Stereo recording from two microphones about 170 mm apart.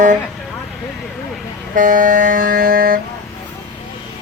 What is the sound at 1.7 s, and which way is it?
Vehicle, 50° right (ahead or behind).